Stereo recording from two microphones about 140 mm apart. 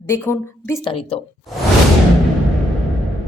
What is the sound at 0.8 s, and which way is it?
Speech, 40° left (ahead or behind).